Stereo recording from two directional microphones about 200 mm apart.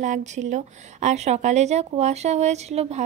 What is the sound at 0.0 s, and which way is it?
A woman's voice, 35° right (ahead or behind).